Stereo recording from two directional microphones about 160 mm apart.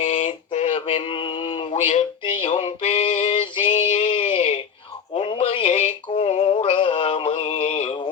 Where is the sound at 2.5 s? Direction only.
45° left (ahead or behind).